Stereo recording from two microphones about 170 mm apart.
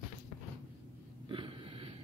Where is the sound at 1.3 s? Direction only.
30° right (ahead or behind).